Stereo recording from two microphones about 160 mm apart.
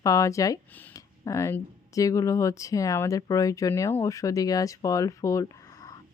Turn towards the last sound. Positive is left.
turn(degrees=20)  # may be behind; listen again after turning